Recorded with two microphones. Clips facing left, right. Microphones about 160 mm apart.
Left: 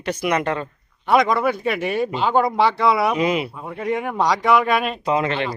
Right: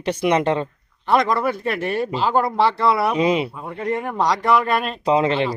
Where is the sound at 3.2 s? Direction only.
30° right (ahead or behind).